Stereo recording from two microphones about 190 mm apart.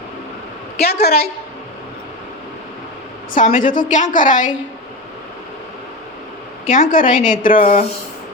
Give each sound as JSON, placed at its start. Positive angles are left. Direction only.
{"t": 0.8, "sound": "a woman's voice", "side_deg": 55}
{"t": 3.3, "sound": "a woman's voice", "side_deg": 45}
{"t": 6.7, "sound": "a woman's voice", "side_deg": 45}